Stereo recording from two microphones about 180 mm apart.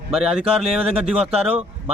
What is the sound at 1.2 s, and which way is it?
Speech, 35° right (ahead or behind).